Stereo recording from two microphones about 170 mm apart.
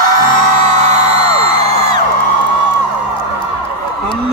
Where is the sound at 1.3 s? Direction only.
35° right (ahead or behind).